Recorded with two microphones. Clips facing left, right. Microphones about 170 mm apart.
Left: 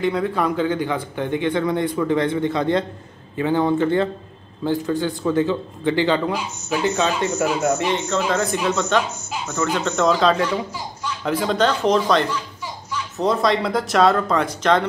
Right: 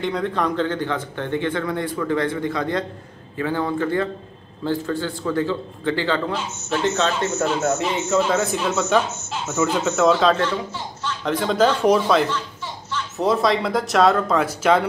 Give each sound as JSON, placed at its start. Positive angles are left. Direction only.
{"t": 0.0, "sound": "a man's voice", "side_deg": 5}
{"t": 7.7, "sound": "speech", "side_deg": -5}